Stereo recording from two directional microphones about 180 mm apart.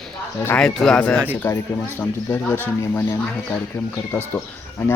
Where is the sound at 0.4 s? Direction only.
10° left (ahead or behind).